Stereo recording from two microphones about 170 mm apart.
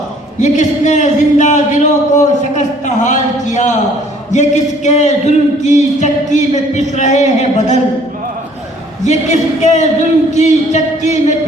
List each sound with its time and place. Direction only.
0.3 s speech: 45° left (ahead or behind)
9.0 s speech: 45° left (ahead or behind)